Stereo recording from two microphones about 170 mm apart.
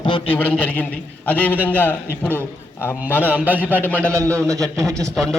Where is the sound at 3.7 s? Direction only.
10° left (ahead or behind).